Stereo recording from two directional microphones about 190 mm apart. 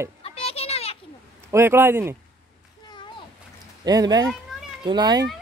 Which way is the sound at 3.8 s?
20° right (ahead or behind).